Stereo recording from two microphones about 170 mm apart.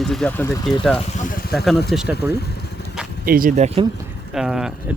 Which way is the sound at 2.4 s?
75° left (ahead or behind).